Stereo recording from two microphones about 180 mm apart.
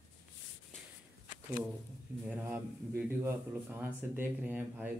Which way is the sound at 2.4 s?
15° right (ahead or behind).